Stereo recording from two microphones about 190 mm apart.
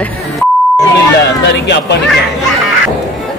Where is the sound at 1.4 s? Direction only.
65° left (ahead or behind).